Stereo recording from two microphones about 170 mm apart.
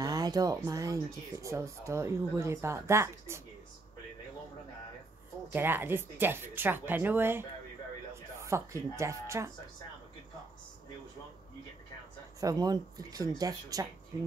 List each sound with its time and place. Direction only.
0.0 s a sound: 20° right (ahead or behind)
0.7 s speech: 20° right (ahead or behind)
5.5 s speech: 10° right (ahead or behind)
12.4 s speech: 20° right (ahead or behind)